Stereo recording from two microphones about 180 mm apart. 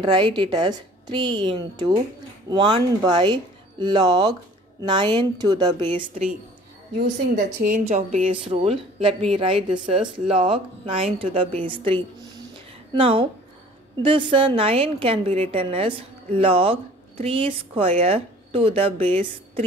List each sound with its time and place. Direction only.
0.0 s a woman's voice: 25° right (ahead or behind)
7.0 s a woman's voice: 65° right (ahead or behind)
7.7 s a woman's voice: 40° right (ahead or behind)